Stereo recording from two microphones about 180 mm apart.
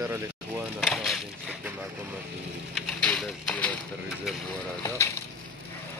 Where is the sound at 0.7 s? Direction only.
Centre (ahead or behind).